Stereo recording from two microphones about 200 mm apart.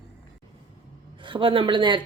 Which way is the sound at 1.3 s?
25° right (ahead or behind).